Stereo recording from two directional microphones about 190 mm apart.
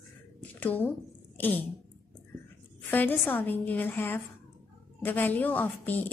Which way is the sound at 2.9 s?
10° left (ahead or behind).